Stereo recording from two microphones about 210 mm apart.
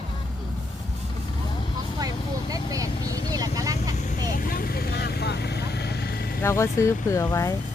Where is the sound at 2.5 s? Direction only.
15° right (ahead or behind).